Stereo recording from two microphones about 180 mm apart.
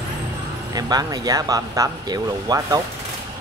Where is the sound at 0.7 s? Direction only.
20° right (ahead or behind).